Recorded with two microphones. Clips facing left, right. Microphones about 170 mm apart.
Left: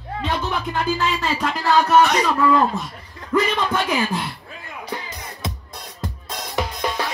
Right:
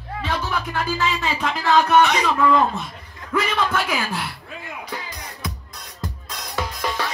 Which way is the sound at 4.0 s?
15° left (ahead or behind).